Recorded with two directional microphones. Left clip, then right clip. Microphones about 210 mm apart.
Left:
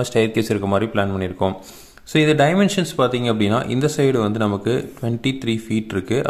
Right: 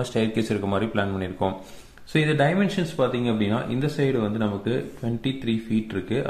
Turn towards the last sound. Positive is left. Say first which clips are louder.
# left 6 dB
turn(degrees=40)  # may be behind; listen again after turning